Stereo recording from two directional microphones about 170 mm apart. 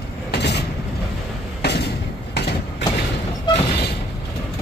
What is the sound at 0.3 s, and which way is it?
Vehicle, 80° left.